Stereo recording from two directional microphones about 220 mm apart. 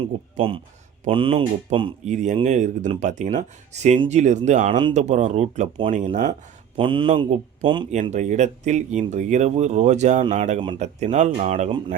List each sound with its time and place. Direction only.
0.3 s speech: 25° right (ahead or behind)
6.7 s speech: 25° right (ahead or behind)
7.9 s speech: 35° right (ahead or behind)